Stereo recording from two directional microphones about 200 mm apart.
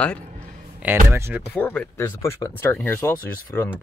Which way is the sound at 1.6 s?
10° left (ahead or behind).